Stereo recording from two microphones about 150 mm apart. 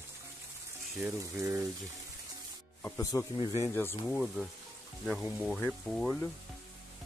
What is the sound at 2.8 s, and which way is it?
Speech, 15° left (ahead or behind).